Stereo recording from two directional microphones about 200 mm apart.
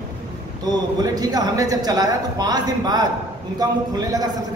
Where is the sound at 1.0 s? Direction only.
20° right (ahead or behind).